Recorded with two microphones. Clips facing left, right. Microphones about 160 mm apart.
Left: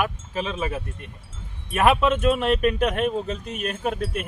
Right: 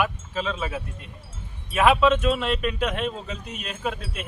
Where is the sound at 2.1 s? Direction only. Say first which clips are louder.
Left 2 dB; 50° left (ahead or behind).